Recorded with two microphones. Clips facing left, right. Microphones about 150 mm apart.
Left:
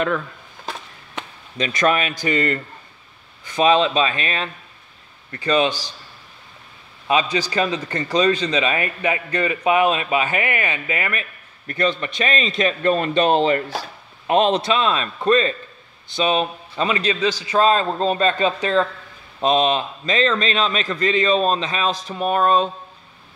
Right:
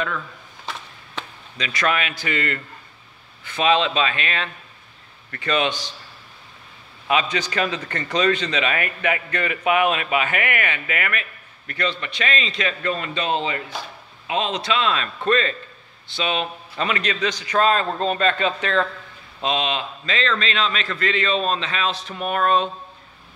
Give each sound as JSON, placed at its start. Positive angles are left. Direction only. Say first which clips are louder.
{"t": 1.6, "sound": "speech", "louder": "left 4 dB", "side_deg": 45}
{"t": 7.1, "sound": "speech", "louder": "left 2 dB", "side_deg": 30}
{"t": 11.8, "sound": "a man's voice", "louder": "left 4 dB", "side_deg": 45}
{"t": 14.7, "sound": "speech", "louder": "left 2 dB", "side_deg": 35}
{"t": 16.7, "sound": "speech", "louder": "left 3 dB", "side_deg": 30}
{"t": 19.4, "sound": "a man's voice", "louder": "left 6 dB", "side_deg": 45}